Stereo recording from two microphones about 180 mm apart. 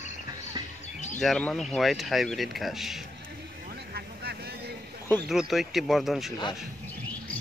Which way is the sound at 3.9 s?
60° right (ahead or behind).